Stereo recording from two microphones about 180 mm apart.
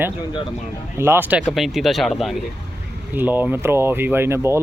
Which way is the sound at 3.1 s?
10° right (ahead or behind).